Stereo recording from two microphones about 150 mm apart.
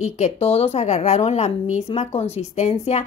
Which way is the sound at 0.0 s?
45° left (ahead or behind).